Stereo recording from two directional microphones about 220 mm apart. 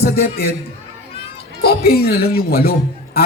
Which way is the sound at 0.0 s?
45° left (ahead or behind).